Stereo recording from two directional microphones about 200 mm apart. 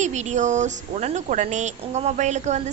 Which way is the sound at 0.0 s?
35° right (ahead or behind).